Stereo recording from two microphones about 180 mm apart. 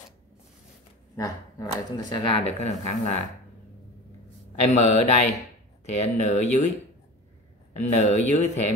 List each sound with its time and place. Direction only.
1.1 s speech: 20° left (ahead or behind); by 3.2 s 40° left (ahead or behind)
4.7 s speech: 40° left (ahead or behind)
7.7 s speech: 40° left (ahead or behind)